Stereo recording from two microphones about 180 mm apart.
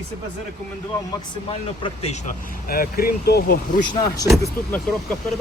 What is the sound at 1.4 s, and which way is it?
Speech, 30° left (ahead or behind).